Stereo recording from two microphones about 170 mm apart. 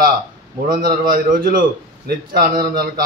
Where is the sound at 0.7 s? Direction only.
55° right (ahead or behind).